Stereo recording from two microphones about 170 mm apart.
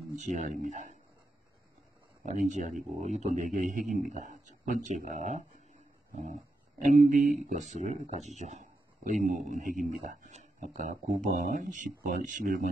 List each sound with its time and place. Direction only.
0.1 s speech: 45° right (ahead or behind)
2.2 s speech: 45° right (ahead or behind)
6.8 s speech: 50° right (ahead or behind)